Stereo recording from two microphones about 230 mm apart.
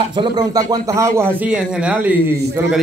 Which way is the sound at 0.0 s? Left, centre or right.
Right.